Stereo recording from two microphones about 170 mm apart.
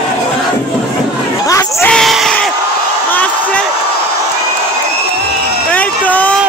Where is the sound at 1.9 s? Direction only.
Centre (ahead or behind).